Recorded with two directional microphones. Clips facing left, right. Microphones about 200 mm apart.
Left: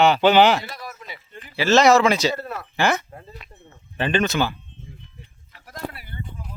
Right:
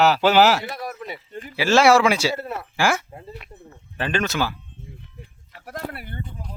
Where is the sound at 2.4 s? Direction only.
25° right (ahead or behind).